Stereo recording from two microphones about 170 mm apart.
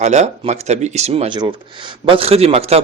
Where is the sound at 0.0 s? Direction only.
40° right (ahead or behind).